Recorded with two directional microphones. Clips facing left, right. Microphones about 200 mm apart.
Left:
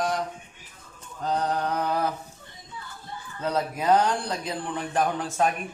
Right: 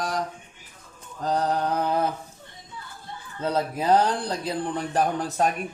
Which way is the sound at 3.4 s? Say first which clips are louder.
Right 1 dB; 30° right (ahead or behind).